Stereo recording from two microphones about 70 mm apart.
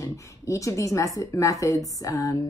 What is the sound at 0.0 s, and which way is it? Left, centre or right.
A woman's voice, left.